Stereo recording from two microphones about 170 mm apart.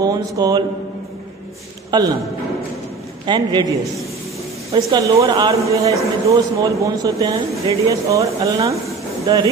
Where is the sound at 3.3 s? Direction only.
25° right (ahead or behind).